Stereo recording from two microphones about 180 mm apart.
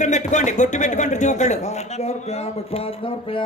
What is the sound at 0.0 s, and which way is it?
A man's voice, 40° left (ahead or behind).